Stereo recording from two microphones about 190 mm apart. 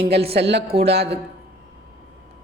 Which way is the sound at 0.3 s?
65° right (ahead or behind).